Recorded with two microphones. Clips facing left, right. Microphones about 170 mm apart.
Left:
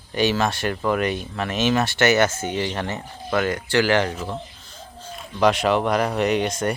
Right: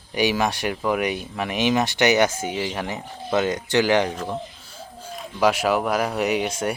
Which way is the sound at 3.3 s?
20° right (ahead or behind).